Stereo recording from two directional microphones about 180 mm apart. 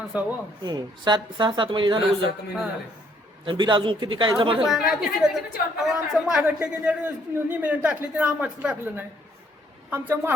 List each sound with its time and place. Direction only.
0.1 s a woman's voice: 5° right (ahead or behind)
0.6 s a woman's voice: 25° right (ahead or behind)
3.4 s a woman's voice: 25° right (ahead or behind)
4.6 s a woman's voice: centre (ahead or behind)